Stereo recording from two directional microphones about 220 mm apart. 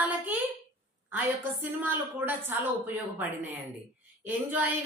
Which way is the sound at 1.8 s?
10° right (ahead or behind).